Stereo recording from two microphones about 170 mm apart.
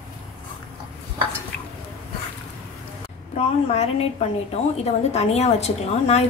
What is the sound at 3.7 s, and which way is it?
A woman's voice, 35° left (ahead or behind).